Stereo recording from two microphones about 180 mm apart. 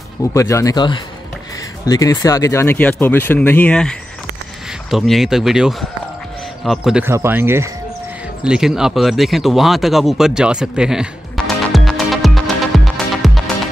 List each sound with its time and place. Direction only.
0.3 s speech: 15° left (ahead or behind)
4.9 s speech: centre (ahead or behind)
8.5 s a sound: 5° right (ahead or behind)